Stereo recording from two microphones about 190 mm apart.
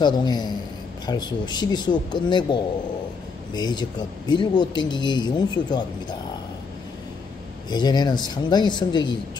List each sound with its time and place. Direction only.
0.0 s speech: 20° left (ahead or behind)
7.7 s speech: 20° left (ahead or behind)